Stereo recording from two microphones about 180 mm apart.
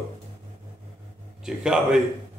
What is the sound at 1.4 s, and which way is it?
Speech, 5° right (ahead or behind).